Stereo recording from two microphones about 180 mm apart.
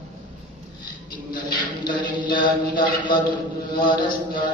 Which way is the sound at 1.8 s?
25° left (ahead or behind).